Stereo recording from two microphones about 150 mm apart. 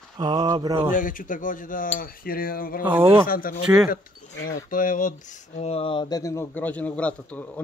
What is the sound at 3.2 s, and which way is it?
Cutlery, 75° left (ahead or behind).